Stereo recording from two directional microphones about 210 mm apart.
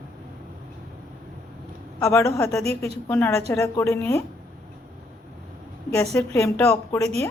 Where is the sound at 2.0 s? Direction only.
15° left (ahead or behind).